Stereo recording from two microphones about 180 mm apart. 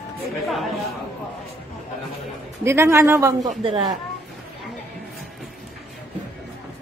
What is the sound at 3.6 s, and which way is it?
Speech, 30° right (ahead or behind).